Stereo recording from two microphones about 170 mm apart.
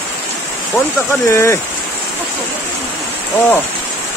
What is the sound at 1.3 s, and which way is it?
Speech, 15° left (ahead or behind).